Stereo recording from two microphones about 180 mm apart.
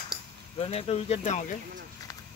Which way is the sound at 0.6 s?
35° left (ahead or behind).